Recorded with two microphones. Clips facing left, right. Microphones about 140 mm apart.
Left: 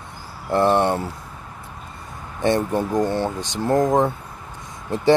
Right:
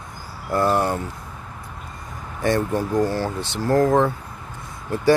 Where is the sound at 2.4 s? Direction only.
20° left (ahead or behind).